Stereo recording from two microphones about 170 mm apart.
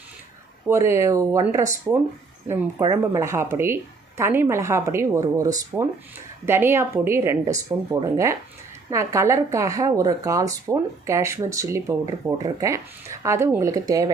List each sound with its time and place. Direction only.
0.7 s speech: 15° right (ahead or behind)
2.9 s speech: 20° right (ahead or behind)